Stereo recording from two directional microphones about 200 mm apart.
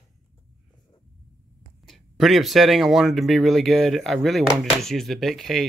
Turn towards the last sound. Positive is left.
turn(degrees=0)  # may be behind; listen again after turning